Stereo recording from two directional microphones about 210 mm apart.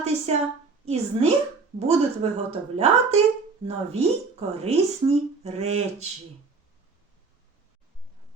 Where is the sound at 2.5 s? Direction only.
30° right (ahead or behind).